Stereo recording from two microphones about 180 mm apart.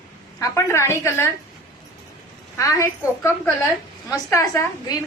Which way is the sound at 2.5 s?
15° left (ahead or behind).